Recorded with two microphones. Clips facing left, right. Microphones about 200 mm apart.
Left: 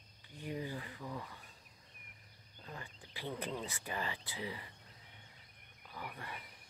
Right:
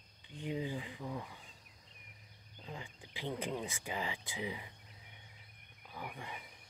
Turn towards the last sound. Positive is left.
turn(degrees=-15)  # may be behind; listen again after turning